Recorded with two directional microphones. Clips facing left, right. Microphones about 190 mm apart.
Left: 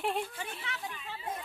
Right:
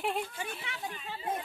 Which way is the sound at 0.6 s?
20° right (ahead or behind).